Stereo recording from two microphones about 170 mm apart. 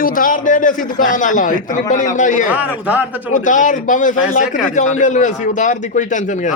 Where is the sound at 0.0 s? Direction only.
55° left (ahead or behind).